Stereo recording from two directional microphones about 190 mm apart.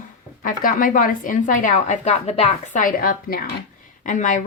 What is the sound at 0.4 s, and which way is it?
A woman's voice, 45° left (ahead or behind).